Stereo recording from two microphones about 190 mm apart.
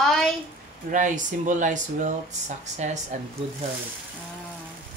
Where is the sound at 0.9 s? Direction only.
40° right (ahead or behind).